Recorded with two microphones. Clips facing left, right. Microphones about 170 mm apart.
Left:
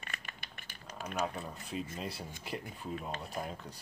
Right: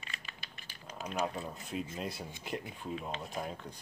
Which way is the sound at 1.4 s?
Centre (ahead or behind).